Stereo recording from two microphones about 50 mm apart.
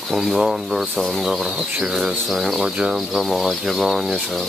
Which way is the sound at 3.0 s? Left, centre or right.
Centre.